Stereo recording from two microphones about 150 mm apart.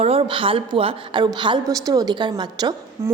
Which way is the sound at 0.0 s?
40° right (ahead or behind).